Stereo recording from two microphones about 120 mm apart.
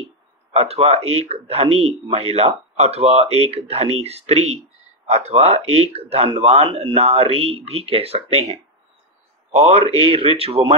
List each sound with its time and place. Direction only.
0.5 s speech: 55° right (ahead or behind)